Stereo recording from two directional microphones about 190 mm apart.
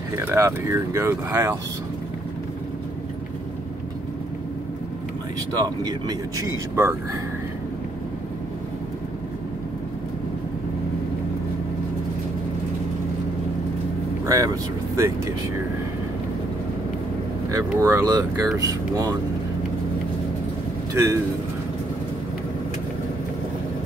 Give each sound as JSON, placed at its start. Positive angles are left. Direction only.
{"t": 0.2, "sound": "speech", "side_deg": -15}
{"t": 5.6, "sound": "speech", "side_deg": -20}
{"t": 14.2, "sound": "speech", "side_deg": -15}
{"t": 17.5, "sound": "speech", "side_deg": -15}
{"t": 20.9, "sound": "speech", "side_deg": -15}